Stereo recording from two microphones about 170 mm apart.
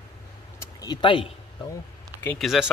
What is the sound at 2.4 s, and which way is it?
Speech, centre (ahead or behind).